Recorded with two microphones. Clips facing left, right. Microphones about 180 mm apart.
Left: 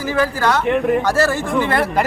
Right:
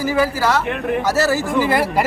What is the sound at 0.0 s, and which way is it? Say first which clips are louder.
Speech: even; 10° right (ahead or behind).